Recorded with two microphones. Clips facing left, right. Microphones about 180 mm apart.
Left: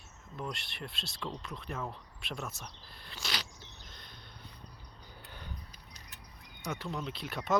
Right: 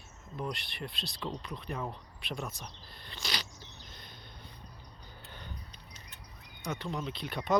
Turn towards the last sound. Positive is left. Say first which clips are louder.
# right 2 dB
turn(degrees=0)  # may be behind; listen again after turning